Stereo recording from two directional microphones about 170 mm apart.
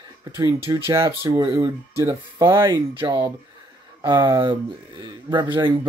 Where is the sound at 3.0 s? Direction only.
25° right (ahead or behind).